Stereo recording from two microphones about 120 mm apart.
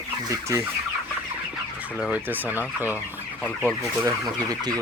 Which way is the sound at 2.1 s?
15° right (ahead or behind).